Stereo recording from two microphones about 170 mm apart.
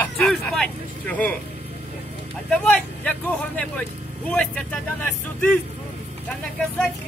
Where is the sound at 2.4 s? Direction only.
5° left (ahead or behind).